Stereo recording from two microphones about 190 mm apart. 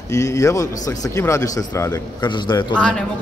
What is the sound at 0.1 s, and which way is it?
Speech, 15° left (ahead or behind).